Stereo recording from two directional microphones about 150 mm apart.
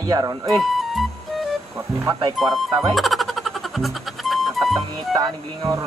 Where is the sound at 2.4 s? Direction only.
Centre (ahead or behind).